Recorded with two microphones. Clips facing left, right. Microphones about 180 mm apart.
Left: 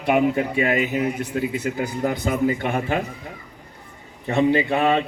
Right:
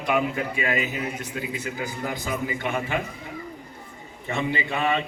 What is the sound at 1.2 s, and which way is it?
A man's voice, 55° left (ahead or behind).